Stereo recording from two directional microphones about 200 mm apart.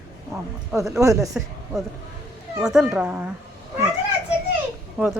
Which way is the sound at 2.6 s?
5° right (ahead or behind).